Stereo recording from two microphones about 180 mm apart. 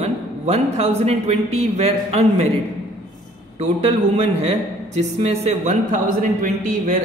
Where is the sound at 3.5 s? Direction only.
35° right (ahead or behind).